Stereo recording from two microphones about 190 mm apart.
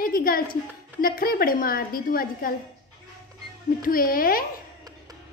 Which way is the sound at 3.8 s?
50° left (ahead or behind).